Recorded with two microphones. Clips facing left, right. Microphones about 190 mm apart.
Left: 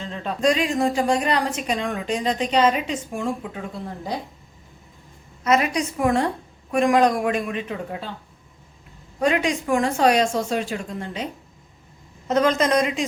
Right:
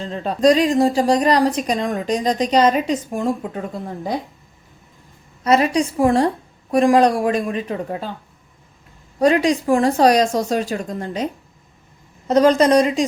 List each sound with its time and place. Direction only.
0.0 s a woman's voice: 35° right (ahead or behind)
5.4 s a woman's voice: 35° right (ahead or behind)
9.1 s a woman's voice: 35° right (ahead or behind)
12.3 s a woman's voice: 35° right (ahead or behind)